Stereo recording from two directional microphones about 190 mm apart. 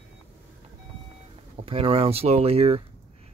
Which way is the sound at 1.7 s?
30° right (ahead or behind).